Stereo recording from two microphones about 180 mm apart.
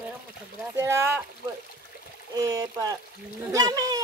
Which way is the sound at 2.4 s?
20° right (ahead or behind).